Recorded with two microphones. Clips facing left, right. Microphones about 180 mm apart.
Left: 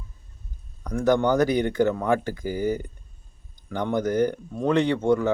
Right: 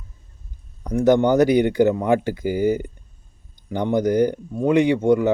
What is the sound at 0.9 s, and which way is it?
Speech, 20° right (ahead or behind).